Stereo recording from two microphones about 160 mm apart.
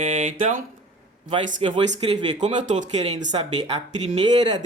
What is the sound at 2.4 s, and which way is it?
Speech, 50° right (ahead or behind).